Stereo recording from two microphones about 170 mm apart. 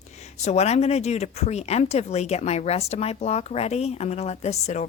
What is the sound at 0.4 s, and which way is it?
Speech, 40° left (ahead or behind).